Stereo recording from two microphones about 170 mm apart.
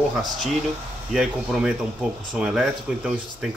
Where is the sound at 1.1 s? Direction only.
Centre (ahead or behind).